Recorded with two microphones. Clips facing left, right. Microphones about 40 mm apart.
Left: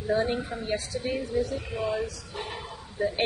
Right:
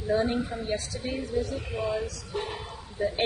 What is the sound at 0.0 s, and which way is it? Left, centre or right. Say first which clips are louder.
A woman's voice: even; centre.